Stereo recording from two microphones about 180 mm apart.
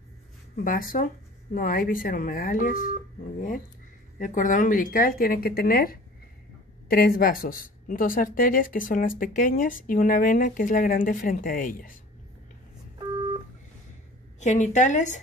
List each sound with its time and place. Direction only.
0.7 s speech: 50° left (ahead or behind)
14.4 s a woman's voice: 40° left (ahead or behind)